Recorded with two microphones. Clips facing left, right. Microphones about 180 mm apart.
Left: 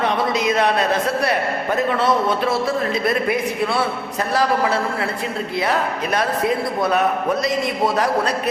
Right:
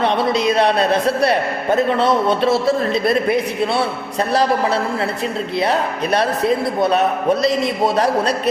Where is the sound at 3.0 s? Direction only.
25° right (ahead or behind).